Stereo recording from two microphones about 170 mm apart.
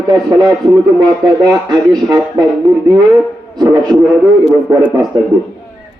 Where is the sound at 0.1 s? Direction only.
25° right (ahead or behind).